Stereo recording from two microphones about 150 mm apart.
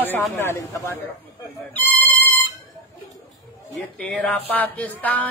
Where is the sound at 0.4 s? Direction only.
20° left (ahead or behind).